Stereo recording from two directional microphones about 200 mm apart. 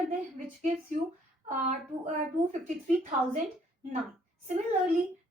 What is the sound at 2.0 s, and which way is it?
A woman's voice, 35° right (ahead or behind).